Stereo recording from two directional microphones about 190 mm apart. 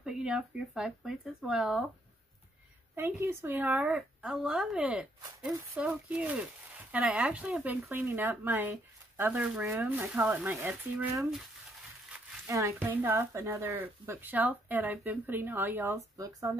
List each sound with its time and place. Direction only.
0.0 s speech: 5° right (ahead or behind)
3.0 s speech: 15° right (ahead or behind)
12.4 s speech: 15° right (ahead or behind)